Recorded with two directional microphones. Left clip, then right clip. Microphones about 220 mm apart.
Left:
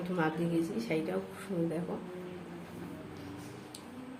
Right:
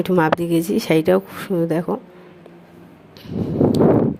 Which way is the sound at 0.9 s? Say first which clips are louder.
Right 18 dB; 50° right (ahead or behind).